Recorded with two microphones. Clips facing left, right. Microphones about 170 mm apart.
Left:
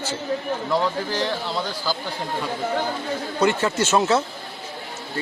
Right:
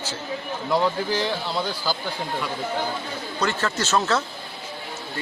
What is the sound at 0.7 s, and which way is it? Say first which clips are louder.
Speech: right 2 dB; 10° right (ahead or behind).